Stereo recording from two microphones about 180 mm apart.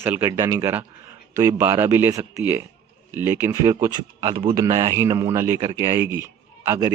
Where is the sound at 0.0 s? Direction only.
15° right (ahead or behind).